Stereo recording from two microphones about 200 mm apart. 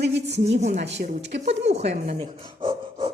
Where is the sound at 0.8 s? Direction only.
60° right (ahead or behind).